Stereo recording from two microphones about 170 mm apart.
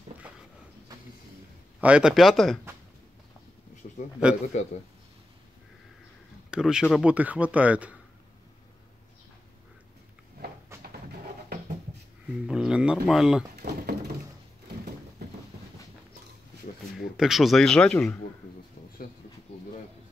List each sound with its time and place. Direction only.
0.2 s a sound: 10° right (ahead or behind)
1.8 s speech: 5° right (ahead or behind)
3.8 s a sound: 60° left (ahead or behind)
4.5 s a man's voice: 45° left (ahead or behind)
6.5 s speech: 5° right (ahead or behind)
10.8 s music: 65° right (ahead or behind)
12.4 s speech: 5° right (ahead or behind)
13.6 s a sound: 70° right (ahead or behind)
17.2 s speech: centre (ahead or behind)